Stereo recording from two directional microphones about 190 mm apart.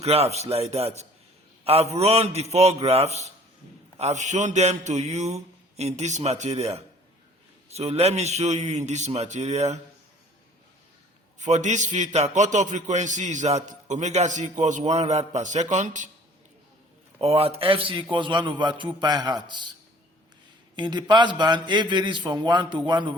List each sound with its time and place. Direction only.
0.0 s a man's voice: 35° right (ahead or behind)
11.3 s a man's voice: 40° right (ahead or behind)
17.2 s a man's voice: 30° right (ahead or behind)
20.7 s a man's voice: 25° right (ahead or behind)